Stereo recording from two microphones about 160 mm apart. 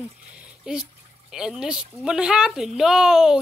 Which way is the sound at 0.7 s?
5° right (ahead or behind).